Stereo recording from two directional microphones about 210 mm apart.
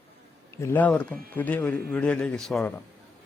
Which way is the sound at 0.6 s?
10° left (ahead or behind).